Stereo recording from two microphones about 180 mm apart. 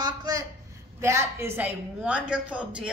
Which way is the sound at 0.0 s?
20° right (ahead or behind).